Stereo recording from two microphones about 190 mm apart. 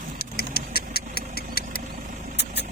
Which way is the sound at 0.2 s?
55° left (ahead or behind).